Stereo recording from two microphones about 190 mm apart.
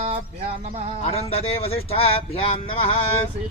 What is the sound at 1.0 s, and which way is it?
Speech, 30° left (ahead or behind).